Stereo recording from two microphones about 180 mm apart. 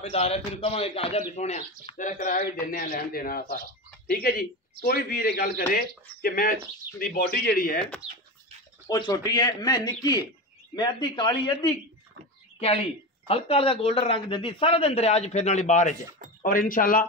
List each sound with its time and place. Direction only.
0.1 s a man's voice: 35° left (ahead or behind); by 7.8 s 50° left (ahead or behind)
8.0 s speech: centre (ahead or behind)
8.9 s speech: 20° left (ahead or behind); by 17.0 s 50° left (ahead or behind)